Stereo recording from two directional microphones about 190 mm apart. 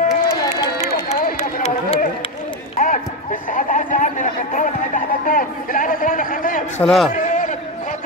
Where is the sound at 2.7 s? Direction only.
45° left (ahead or behind).